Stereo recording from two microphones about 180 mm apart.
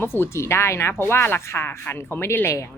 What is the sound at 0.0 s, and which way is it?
A woman's voice, 15° left (ahead or behind).